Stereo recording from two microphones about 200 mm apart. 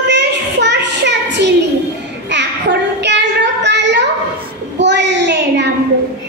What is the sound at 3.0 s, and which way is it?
Child singing, 60° right (ahead or behind).